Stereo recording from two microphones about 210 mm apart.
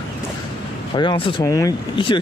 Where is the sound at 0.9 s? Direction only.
25° left (ahead or behind).